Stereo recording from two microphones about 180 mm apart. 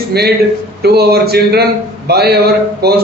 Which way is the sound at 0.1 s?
60° right (ahead or behind).